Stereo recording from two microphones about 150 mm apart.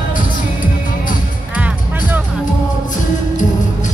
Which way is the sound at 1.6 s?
10° right (ahead or behind).